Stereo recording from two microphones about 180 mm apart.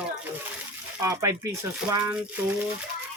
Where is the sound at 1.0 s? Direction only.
20° right (ahead or behind).